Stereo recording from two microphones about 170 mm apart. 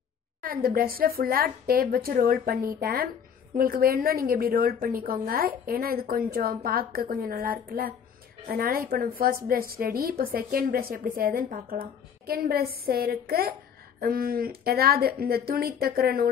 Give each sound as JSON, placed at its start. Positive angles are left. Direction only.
{"t": 0.4, "sound": "a woman's voice", "side_deg": -60}